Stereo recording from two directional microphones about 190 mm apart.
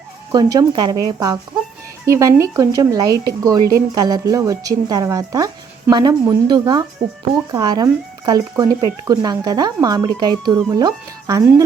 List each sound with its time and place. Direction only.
0.3 s speech: 20° right (ahead or behind)
3.6 s a woman's voice: 50° right (ahead or behind)
3.9 s speech: 20° right (ahead or behind)